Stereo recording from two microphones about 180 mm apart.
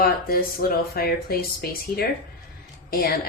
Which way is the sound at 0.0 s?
55° left (ahead or behind).